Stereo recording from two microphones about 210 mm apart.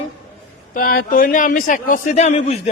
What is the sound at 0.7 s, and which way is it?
A man's voice, 45° left (ahead or behind).